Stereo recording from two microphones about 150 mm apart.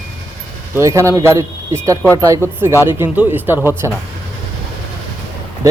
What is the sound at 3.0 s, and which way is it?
Speech, 10° right (ahead or behind).